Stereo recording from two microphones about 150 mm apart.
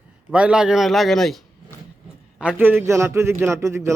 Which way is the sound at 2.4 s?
10° right (ahead or behind).